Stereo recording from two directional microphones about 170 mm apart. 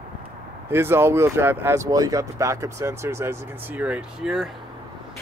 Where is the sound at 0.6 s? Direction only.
15° right (ahead or behind).